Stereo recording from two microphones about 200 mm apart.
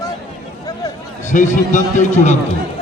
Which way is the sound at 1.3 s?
40° left (ahead or behind).